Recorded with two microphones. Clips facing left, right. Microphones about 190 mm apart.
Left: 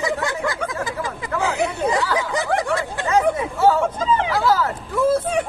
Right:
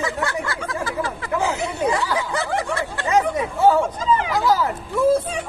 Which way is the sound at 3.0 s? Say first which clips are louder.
Left 1 dB; 20° right (ahead or behind).